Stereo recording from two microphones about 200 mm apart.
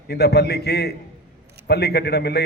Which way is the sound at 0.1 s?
55° left (ahead or behind).